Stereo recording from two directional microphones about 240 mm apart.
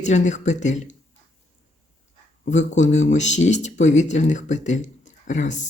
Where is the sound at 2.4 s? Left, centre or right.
Left.